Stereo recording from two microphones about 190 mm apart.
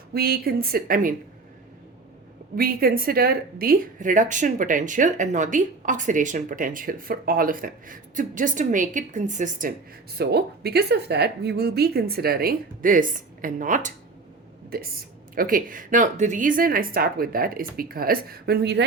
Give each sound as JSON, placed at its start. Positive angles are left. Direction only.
{"t": 0.1, "sound": "a woman's voice", "side_deg": -50}
{"t": 2.6, "sound": "a woman's voice", "side_deg": -50}
{"t": 10.2, "sound": "a woman's voice", "side_deg": -55}
{"t": 14.7, "sound": "a woman's voice", "side_deg": -55}